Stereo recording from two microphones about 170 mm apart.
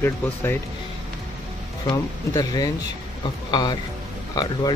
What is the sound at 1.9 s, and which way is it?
Speech, 20° left (ahead or behind).